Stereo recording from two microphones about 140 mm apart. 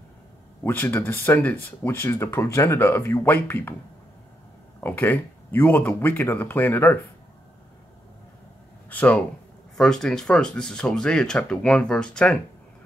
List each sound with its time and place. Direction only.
0.7 s speech: 15° left (ahead or behind)
4.7 s speech: 15° left (ahead or behind)
8.8 s speech: 10° left (ahead or behind)